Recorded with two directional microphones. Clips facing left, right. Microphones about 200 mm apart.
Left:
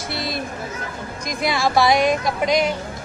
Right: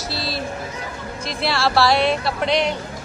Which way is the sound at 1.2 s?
15° left (ahead or behind).